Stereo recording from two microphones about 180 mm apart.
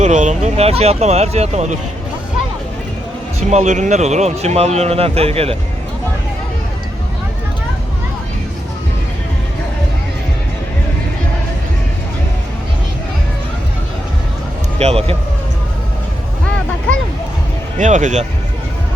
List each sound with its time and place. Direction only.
0.0 s speech: 40° right (ahead or behind)
3.5 s speech: 40° right (ahead or behind)
14.8 s speech: 35° right (ahead or behind)
17.7 s speech: 45° right (ahead or behind)